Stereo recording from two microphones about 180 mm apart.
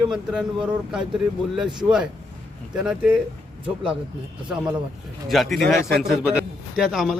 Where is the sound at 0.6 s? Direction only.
5° right (ahead or behind).